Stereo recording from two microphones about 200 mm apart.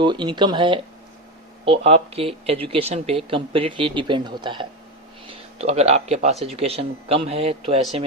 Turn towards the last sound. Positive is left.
turn(degrees=-30)  # may be behind; listen again after turning